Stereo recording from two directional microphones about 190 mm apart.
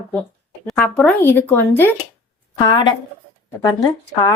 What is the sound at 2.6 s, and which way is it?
Speech, 20° left (ahead or behind).